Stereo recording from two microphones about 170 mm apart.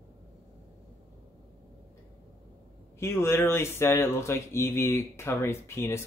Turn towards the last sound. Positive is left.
turn(degrees=15)  # may be behind; listen again after turning